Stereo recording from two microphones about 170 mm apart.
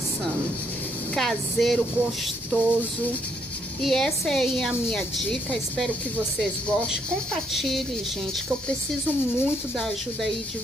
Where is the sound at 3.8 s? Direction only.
5° left (ahead or behind).